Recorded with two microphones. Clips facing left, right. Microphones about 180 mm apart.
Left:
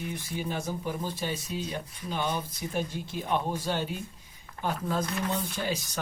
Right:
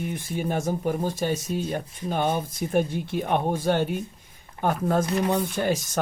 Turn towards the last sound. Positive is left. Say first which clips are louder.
# right 7 dB
turn(degrees=-50)  # may be behind; listen again after turning